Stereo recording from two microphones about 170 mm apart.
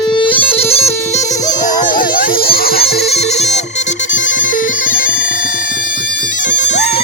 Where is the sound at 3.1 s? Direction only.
40° left (ahead or behind); by 5.3 s 55° left (ahead or behind).